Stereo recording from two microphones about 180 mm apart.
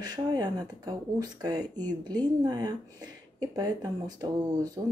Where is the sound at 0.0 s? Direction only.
20° right (ahead or behind).